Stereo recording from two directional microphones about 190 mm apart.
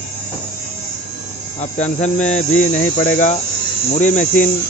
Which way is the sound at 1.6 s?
35° left (ahead or behind).